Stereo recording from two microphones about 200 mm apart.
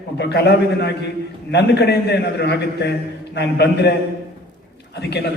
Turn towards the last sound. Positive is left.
turn(degrees=55)  # may be behind; listen again after turning